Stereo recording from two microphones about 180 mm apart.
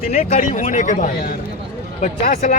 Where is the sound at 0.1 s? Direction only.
45° left (ahead or behind).